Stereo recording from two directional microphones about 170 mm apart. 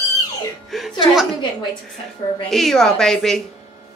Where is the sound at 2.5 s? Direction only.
Centre (ahead or behind).